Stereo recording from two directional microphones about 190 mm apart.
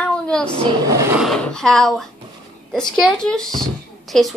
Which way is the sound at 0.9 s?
15° right (ahead or behind).